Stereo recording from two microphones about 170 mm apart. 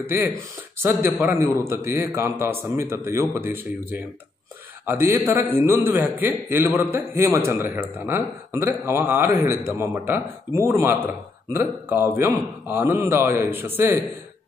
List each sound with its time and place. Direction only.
0.7 s a man's voice: 15° right (ahead or behind)
4.8 s a man's voice: 15° right (ahead or behind)